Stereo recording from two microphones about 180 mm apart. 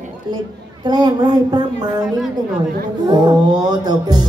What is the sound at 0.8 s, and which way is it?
A man's voice, 25° right (ahead or behind).